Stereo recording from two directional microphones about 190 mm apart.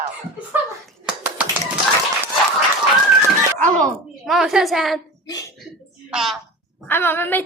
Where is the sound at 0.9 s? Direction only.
5° right (ahead or behind).